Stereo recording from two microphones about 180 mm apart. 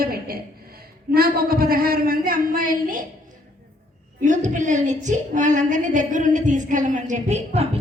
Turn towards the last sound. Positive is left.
turn(degrees=-35)  # may be behind; listen again after turning